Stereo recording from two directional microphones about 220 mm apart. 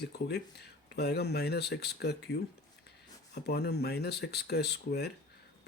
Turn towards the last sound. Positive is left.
turn(degrees=45)  # may be behind; listen again after turning